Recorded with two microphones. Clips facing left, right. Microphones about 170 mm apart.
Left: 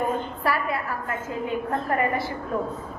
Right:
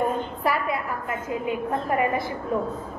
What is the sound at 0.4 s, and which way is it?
A woman's voice, 20° right (ahead or behind).